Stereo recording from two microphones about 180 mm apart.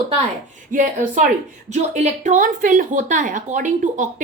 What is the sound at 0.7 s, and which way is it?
A woman's voice, 45° right (ahead or behind).